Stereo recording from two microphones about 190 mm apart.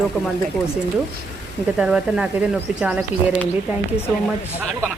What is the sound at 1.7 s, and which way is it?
Speech, 5° right (ahead or behind).